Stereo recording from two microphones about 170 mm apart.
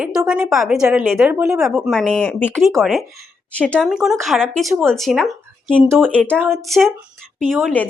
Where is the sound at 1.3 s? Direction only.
15° right (ahead or behind).